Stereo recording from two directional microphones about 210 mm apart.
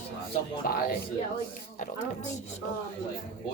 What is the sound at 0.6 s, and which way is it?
Speech, 45° left (ahead or behind).